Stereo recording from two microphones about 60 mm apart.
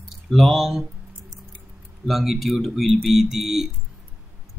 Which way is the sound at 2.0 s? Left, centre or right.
Centre.